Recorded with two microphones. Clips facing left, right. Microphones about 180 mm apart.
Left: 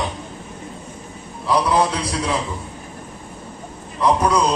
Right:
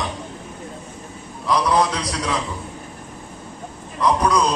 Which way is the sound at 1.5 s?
30° left (ahead or behind).